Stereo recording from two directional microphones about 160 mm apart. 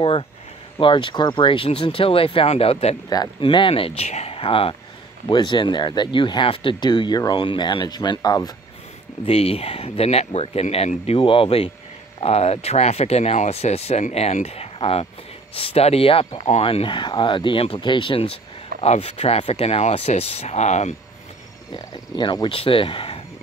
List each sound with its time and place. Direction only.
0.7 s speech: 30° left (ahead or behind)
3.1 s speech: 30° left (ahead or behind)
9.2 s speech: 40° left (ahead or behind)
21.7 s speech: 30° left (ahead or behind)